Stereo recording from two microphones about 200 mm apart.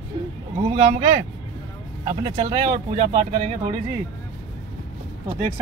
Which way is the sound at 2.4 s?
35° right (ahead or behind).